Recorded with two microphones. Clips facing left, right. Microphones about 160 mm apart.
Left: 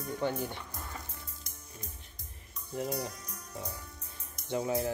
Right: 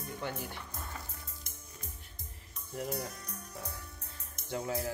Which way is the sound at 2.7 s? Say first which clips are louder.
Left 3 dB; 20° left (ahead or behind).